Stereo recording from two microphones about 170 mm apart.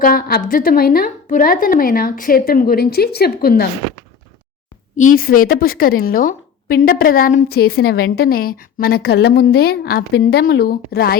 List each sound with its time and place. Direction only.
0.0 s a woman's voice: 60° left (ahead or behind)
4.9 s a woman's voice: 55° left (ahead or behind)